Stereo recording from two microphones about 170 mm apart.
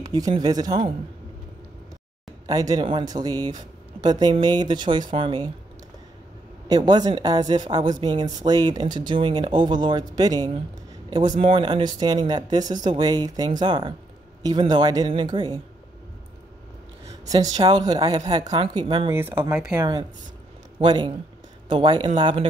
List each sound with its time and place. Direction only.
0.0 s speech: 20° right (ahead or behind)
2.4 s speech: 20° right (ahead or behind)
6.7 s speech: 25° right (ahead or behind)
17.3 s speech: 25° right (ahead or behind)
19.1 s speech: 10° right (ahead or behind)
19.8 s speech: 25° right (ahead or behind)